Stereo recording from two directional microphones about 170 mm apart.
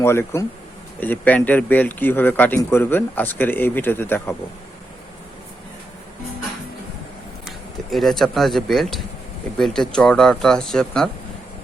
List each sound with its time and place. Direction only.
0.0 s speech: 15° left (ahead or behind)
7.4 s speech: centre (ahead or behind)